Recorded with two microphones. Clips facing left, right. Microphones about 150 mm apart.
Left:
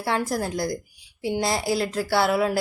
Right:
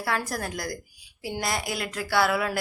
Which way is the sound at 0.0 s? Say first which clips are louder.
Left 4 dB; 25° left (ahead or behind).